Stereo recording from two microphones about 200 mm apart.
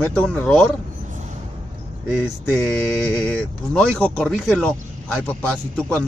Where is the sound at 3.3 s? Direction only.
5° left (ahead or behind).